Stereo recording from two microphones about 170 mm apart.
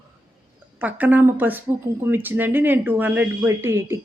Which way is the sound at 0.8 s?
10° right (ahead or behind).